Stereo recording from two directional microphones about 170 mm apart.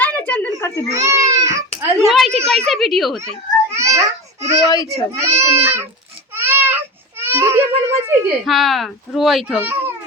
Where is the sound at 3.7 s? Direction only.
15° right (ahead or behind).